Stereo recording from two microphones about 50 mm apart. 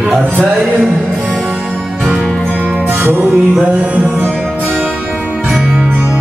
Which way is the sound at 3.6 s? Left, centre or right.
Right.